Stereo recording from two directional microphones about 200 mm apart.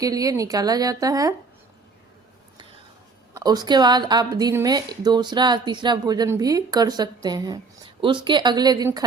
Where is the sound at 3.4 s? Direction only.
20° right (ahead or behind).